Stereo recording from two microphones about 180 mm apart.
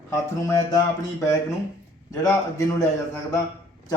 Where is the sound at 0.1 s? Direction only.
20° left (ahead or behind).